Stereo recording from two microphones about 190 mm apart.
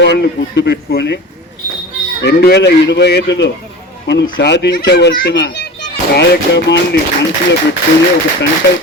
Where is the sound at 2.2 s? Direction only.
60° left (ahead or behind).